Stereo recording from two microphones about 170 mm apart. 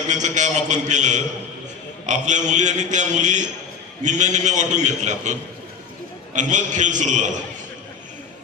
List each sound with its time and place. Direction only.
0.1 s a man's voice: 45° right (ahead or behind)